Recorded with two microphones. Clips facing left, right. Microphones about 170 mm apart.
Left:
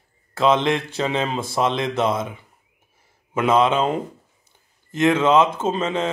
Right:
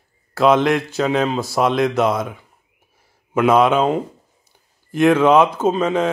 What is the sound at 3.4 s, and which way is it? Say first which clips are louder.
Speech: right 3 dB; 10° right (ahead or behind).